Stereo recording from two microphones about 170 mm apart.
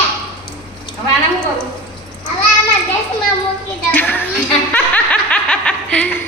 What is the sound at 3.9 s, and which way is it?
Children playing, 10° left (ahead or behind).